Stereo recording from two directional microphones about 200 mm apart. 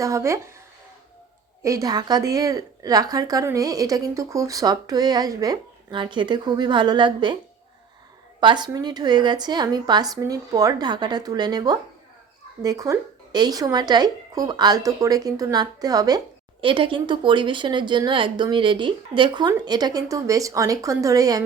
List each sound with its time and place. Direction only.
0.0 s a woman's voice: 15° right (ahead or behind)
1.6 s speech: 15° right (ahead or behind)
8.4 s speech: 20° right (ahead or behind)